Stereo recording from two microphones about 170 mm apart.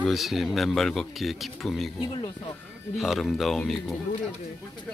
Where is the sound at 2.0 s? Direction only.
25° left (ahead or behind).